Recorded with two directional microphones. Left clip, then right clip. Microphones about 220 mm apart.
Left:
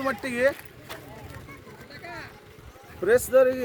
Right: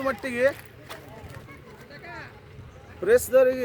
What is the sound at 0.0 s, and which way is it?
Speech, 5° right (ahead or behind).